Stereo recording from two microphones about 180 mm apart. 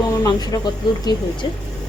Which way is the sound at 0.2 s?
20° left (ahead or behind).